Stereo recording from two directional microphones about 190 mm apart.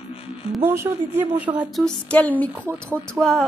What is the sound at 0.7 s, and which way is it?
Speech, 10° right (ahead or behind).